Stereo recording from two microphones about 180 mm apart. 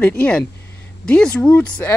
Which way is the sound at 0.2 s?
5° left (ahead or behind).